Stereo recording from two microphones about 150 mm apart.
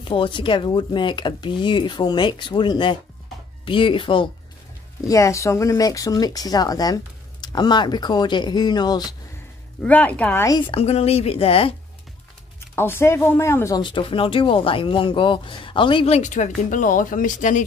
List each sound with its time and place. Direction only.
0.1 s speech: 35° left (ahead or behind)
5.0 s speech: 20° left (ahead or behind)
9.8 s speech: 10° left (ahead or behind)
10.7 s speech: 45° left (ahead or behind)
12.7 s speech: 15° left (ahead or behind)
13.7 s speech: 35° left (ahead or behind)
16.2 s speech: 55° left (ahead or behind)